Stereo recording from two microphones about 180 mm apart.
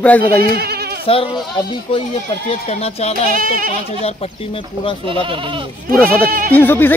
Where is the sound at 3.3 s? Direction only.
50° right (ahead or behind).